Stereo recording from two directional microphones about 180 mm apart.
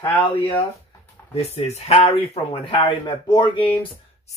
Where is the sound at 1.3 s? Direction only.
35° left (ahead or behind).